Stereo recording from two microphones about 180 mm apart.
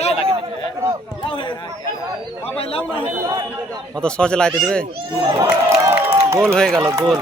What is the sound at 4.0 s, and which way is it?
Speech, 5° left (ahead or behind).